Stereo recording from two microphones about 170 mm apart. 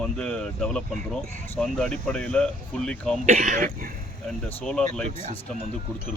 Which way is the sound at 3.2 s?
45° right (ahead or behind).